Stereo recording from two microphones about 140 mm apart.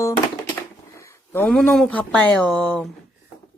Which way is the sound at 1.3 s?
10° left (ahead or behind).